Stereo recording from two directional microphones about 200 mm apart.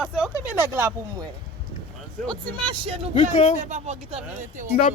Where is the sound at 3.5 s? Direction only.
35° right (ahead or behind).